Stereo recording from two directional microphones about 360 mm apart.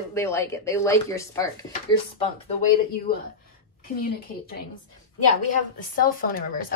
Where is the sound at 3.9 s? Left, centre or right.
Left.